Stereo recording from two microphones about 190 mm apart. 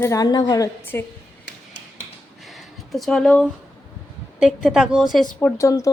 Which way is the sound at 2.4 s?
Centre (ahead or behind).